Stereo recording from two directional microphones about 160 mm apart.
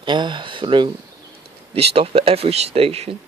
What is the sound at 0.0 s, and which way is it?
Speech, 30° right (ahead or behind).